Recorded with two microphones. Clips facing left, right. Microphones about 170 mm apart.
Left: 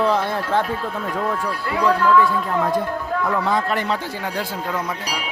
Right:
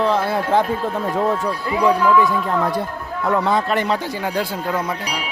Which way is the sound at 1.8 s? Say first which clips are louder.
Right 1 dB; 15° right (ahead or behind).